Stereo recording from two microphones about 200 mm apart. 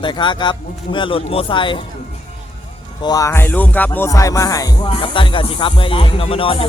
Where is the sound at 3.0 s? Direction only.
15° left (ahead or behind).